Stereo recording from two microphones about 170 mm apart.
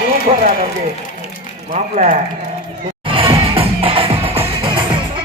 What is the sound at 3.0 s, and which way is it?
Music, 30° right (ahead or behind).